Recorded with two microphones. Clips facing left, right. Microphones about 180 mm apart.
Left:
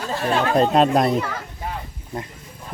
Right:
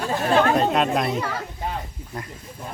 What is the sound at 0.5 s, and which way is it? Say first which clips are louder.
Speech: left 4 dB; 35° left (ahead or behind).